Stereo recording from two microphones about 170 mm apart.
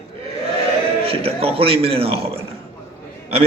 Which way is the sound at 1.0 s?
35° right (ahead or behind).